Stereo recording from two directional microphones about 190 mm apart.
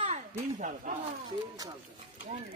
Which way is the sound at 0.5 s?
40° right (ahead or behind).